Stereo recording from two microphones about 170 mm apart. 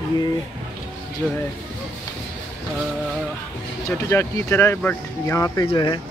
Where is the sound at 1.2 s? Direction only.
Centre (ahead or behind).